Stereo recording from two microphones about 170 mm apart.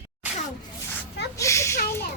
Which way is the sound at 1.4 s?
15° left (ahead or behind).